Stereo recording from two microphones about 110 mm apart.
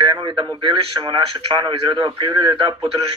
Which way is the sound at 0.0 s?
50° right (ahead or behind).